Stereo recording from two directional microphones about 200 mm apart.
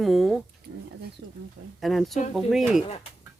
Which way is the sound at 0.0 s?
Centre (ahead or behind).